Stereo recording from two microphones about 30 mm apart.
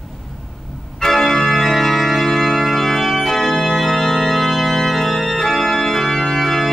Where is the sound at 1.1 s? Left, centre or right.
Centre.